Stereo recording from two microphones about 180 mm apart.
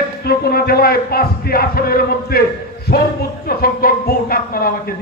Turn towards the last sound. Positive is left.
turn(degrees=55)  # may be behind; listen again after turning